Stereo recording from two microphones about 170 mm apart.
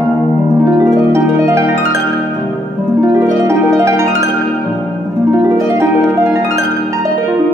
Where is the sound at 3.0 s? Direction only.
20° right (ahead or behind).